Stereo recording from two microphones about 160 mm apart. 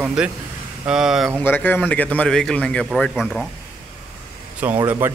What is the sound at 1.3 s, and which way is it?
A man's voice, 10° left (ahead or behind).